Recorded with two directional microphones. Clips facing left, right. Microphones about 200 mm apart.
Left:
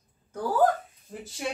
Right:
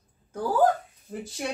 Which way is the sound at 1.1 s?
5° right (ahead or behind).